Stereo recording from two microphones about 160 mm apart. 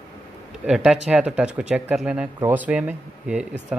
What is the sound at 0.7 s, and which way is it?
Speech, 5° right (ahead or behind).